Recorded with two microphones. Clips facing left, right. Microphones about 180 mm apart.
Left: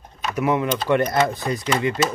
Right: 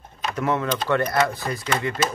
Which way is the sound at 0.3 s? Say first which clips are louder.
Left 3 dB; 10° left (ahead or behind).